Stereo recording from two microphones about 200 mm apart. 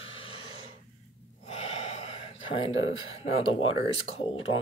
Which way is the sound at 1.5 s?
35° left (ahead or behind).